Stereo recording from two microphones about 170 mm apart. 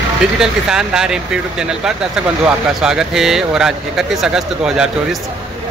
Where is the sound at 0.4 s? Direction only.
5° right (ahead or behind).